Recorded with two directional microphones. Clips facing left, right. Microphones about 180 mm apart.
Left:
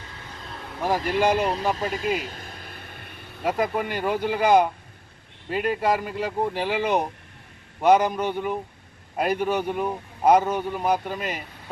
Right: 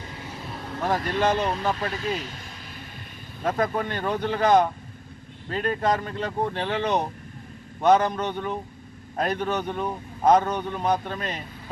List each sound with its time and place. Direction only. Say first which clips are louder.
0.2 s vehicle: right 2 dB; 10° right (ahead or behind)
0.8 s a man's voice: left 2 dB; 10° left (ahead or behind)
2.2 s vehicle: left 2 dB; 45° left (ahead or behind)
3.4 s a man's voice: left 1 dB; 10° left (ahead or behind)